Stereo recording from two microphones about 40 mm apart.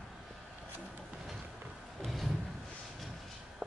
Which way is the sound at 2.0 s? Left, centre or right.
Centre.